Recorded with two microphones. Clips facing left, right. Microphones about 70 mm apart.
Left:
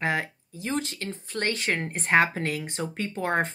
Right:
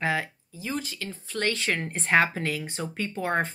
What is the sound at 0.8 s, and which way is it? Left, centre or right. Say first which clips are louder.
Speech: left 2 dB; left.